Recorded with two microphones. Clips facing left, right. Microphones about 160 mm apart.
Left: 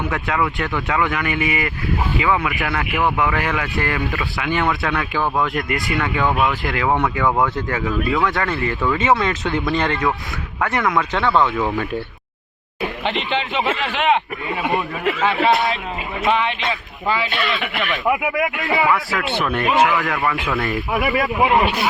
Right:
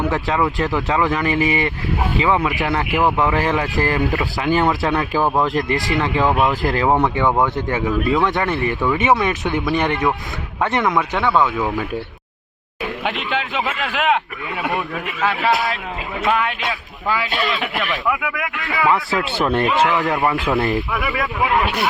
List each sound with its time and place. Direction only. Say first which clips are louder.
0.0 s speech: right 2 dB; 30° right (ahead or behind)
4.6 s speech: right 3 dB; 30° right (ahead or behind)
7.3 s speech: right 1 dB; 20° right (ahead or behind); by 11.9 s 5° right (ahead or behind)
13.1 s speech: left 1 dB; 5° right (ahead or behind)
15.4 s speech: left 2 dB; centre (ahead or behind)
18.0 s speech: left 3 dB; 20° left (ahead or behind)
19.4 s speech: even; 30° right (ahead or behind)
20.9 s speech: left 3 dB; 20° left (ahead or behind)